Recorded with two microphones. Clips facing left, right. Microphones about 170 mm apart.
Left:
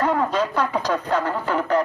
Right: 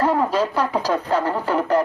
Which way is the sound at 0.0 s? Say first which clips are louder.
Right 2 dB; 10° right (ahead or behind).